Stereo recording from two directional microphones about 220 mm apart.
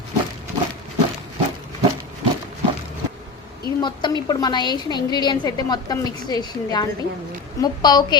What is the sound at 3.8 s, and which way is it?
A woman's voice, 20° left (ahead or behind).